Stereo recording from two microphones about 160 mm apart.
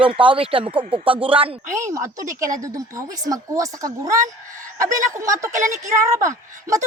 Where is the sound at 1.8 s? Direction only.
20° right (ahead or behind).